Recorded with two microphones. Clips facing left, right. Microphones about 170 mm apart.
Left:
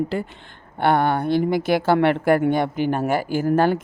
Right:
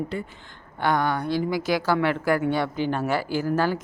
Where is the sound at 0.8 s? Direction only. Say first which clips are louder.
Left 5 dB; 60° left (ahead or behind).